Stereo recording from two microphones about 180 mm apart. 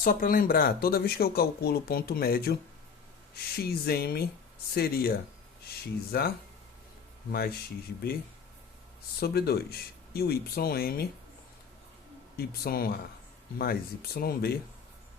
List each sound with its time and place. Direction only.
0.0 s speech: 50° left (ahead or behind)
9.2 s speech: 60° left (ahead or behind)
12.4 s speech: 55° left (ahead or behind)